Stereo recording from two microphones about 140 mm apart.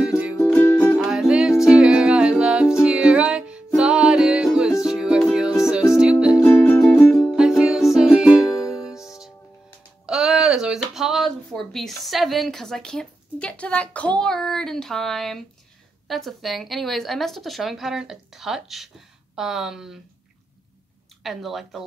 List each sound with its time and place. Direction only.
0.0 s music: 10° right (ahead or behind)
0.6 s music: 15° left (ahead or behind)
0.9 s music: 5° right (ahead or behind)
6.4 s music: 15° left (ahead or behind); by 8.7 s 5° right (ahead or behind)
10.0 s a sound: 5° right (ahead or behind)
16.1 s a woman's voice: centre (ahead or behind)
21.2 s a woman's voice: centre (ahead or behind)